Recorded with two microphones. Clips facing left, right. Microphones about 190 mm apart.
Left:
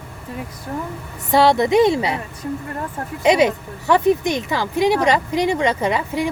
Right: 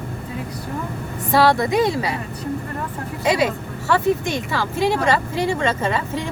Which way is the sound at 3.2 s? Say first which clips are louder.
Left 4 dB; 20° left (ahead or behind).